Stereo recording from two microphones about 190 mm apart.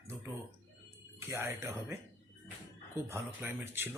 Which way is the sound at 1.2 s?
15° right (ahead or behind).